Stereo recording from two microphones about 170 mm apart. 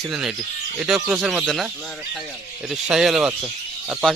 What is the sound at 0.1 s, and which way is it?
Speech, 5° right (ahead or behind).